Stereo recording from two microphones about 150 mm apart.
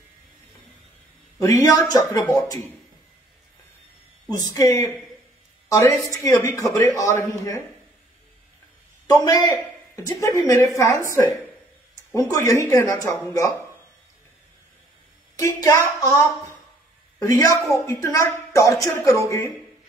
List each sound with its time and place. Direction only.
1.4 s a man's voice: 20° left (ahead or behind)
4.3 s a man's voice: 25° left (ahead or behind)
9.0 s a woman's voice: 25° left (ahead or behind)
15.3 s a man's voice: 20° left (ahead or behind)
17.2 s a man's voice: 20° left (ahead or behind)